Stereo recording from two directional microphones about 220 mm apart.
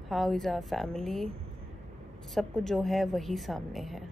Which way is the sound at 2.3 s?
Centre (ahead or behind).